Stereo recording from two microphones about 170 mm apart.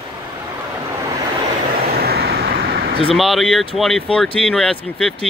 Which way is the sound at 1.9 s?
65° right (ahead or behind).